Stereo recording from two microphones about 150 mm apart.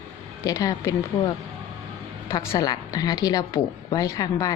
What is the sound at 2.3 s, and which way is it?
A woman's voice, 20° left (ahead or behind).